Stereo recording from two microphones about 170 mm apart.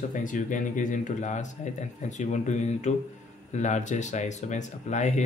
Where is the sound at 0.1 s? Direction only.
50° left (ahead or behind).